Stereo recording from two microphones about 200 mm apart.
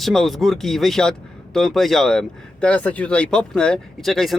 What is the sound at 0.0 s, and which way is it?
Speech, centre (ahead or behind).